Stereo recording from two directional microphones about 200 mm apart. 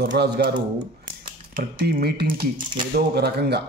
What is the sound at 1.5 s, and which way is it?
Speech, 50° right (ahead or behind).